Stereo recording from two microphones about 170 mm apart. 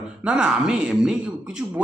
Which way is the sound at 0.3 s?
5° right (ahead or behind).